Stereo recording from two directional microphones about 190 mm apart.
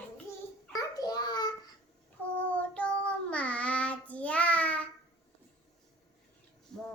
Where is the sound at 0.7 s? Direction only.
20° left (ahead or behind).